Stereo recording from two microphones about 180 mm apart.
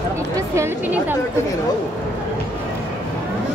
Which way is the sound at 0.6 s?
10° right (ahead or behind).